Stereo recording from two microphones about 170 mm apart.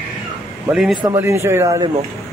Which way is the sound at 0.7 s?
Centre (ahead or behind).